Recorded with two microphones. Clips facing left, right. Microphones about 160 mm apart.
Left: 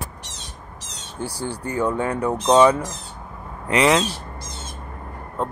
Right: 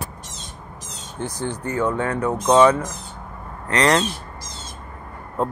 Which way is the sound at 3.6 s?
5° left (ahead or behind).